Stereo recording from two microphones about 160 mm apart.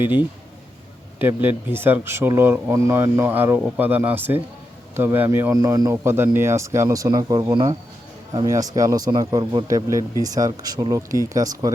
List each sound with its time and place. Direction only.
1.2 s a man's voice: 10° right (ahead or behind)